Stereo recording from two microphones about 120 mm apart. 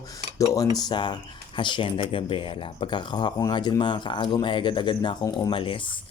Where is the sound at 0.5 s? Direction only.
30° left (ahead or behind).